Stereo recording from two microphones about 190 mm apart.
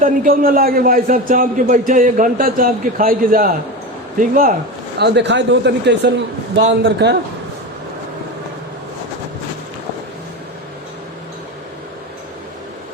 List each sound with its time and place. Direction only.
0.0 s a man's voice: 50° right (ahead or behind)
4.9 s speech: 65° right (ahead or behind)